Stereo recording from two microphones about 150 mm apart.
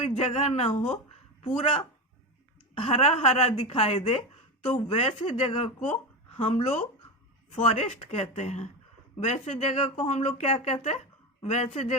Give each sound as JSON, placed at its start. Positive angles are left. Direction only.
{"t": 0.0, "sound": "speech", "side_deg": 45}
{"t": 2.7, "sound": "speech", "side_deg": 40}